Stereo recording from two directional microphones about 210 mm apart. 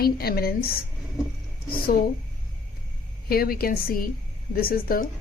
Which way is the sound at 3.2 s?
45° left (ahead or behind).